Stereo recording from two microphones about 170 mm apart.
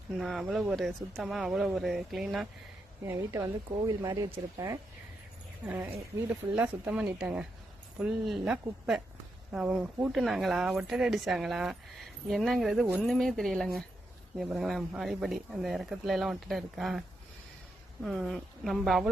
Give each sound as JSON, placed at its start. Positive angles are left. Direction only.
{"t": 0.2, "sound": "speech", "side_deg": 0}
{"t": 3.1, "sound": "speech", "side_deg": -15}
{"t": 18.0, "sound": "speech", "side_deg": 0}